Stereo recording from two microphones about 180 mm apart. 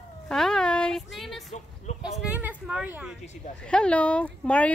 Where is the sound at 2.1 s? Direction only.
5° right (ahead or behind).